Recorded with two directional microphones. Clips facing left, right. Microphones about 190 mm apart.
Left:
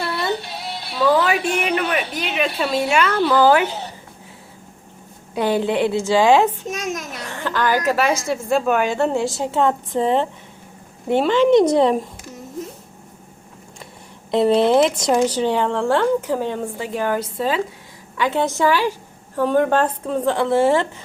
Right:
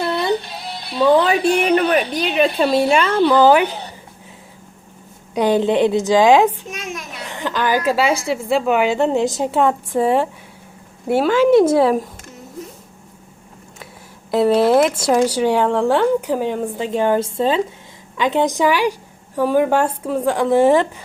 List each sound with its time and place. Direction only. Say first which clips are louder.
0.0 s music: right 4 dB; 20° right (ahead or behind)
0.3 s music: right 4 dB; centre (ahead or behind)
0.9 s a woman's voice: right 3 dB; 25° right (ahead or behind)
5.3 s a woman's voice: right 3 dB; 15° right (ahead or behind)
6.7 s a sound: left 4 dB; 40° left (ahead or behind)
7.3 s a woman's voice: right 1 dB; 15° right (ahead or behind)
14.3 s a woman's voice: right 1 dB; 5° right (ahead or behind)